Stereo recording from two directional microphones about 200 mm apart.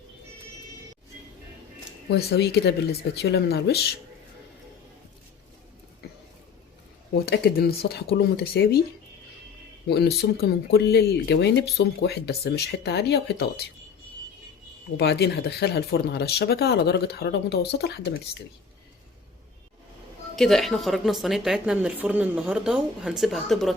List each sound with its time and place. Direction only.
2.0 s speech: 55° left (ahead or behind)
7.1 s speech: 50° left (ahead or behind)
9.9 s speech: 55° left (ahead or behind)
14.9 s speech: 55° left (ahead or behind)
20.3 s a woman's voice: centre (ahead or behind)